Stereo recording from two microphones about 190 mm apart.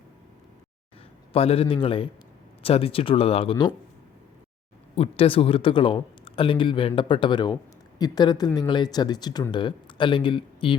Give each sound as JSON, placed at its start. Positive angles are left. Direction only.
{"t": 1.3, "sound": "speech", "side_deg": 30}
{"t": 4.9, "sound": "speech", "side_deg": 30}